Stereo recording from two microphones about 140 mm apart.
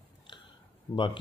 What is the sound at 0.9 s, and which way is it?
Speech, 35° left (ahead or behind).